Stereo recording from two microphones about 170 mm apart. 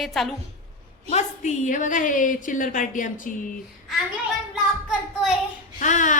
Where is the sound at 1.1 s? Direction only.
45° left (ahead or behind).